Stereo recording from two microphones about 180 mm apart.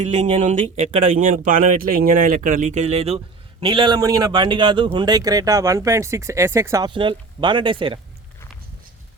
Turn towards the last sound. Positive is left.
turn(degrees=-30)  # may be behind; listen again after turning